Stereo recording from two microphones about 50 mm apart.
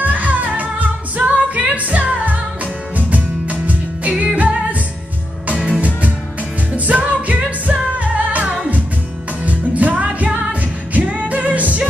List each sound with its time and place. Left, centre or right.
0.0 s music: right
6.9 s music: right